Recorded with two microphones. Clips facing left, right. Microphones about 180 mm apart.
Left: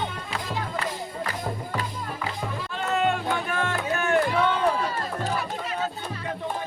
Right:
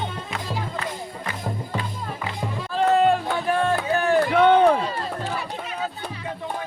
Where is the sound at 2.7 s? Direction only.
35° right (ahead or behind).